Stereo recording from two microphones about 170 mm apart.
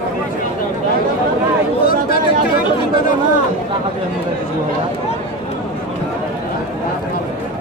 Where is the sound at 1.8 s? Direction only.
65° left (ahead or behind).